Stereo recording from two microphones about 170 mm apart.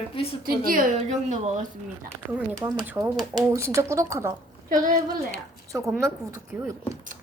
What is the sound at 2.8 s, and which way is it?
Speech, 10° right (ahead or behind).